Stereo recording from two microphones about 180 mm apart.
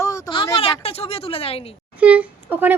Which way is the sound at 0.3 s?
30° left (ahead or behind).